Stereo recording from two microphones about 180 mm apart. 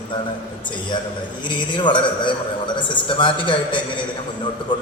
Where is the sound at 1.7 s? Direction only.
25° left (ahead or behind).